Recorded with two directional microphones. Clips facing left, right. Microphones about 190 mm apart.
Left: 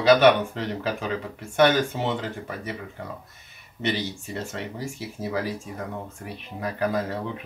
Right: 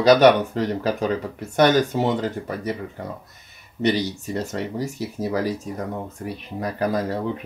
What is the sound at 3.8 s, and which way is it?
Speech, 40° right (ahead or behind).